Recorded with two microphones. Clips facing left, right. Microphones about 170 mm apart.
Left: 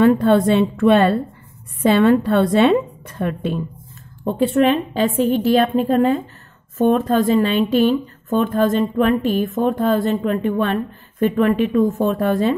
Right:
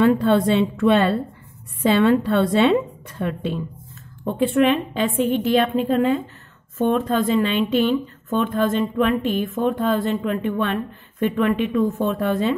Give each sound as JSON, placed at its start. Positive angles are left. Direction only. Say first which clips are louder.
{"t": 0.0, "sound": "a woman's voice", "louder": "left 3 dB", "side_deg": 50}
{"t": 4.2, "sound": "speech", "louder": "left 2 dB", "side_deg": 35}